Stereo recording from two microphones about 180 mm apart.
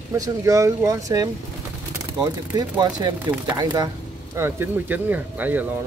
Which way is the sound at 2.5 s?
20° right (ahead or behind).